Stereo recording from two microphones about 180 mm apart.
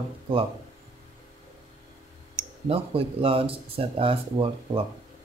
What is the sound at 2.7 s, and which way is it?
Speech, 30° right (ahead or behind).